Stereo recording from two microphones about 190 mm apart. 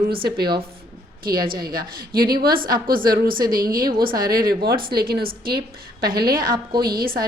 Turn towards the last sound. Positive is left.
turn(degrees=-50)  # may be behind; listen again after turning